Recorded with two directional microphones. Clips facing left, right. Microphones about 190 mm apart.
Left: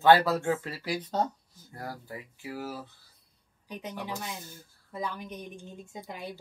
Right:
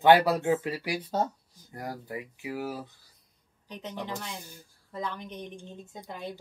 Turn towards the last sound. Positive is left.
turn(degrees=10)  # may be behind; listen again after turning